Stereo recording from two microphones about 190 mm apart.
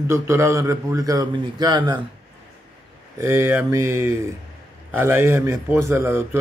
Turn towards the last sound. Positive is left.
turn(degrees=-15)  # may be behind; listen again after turning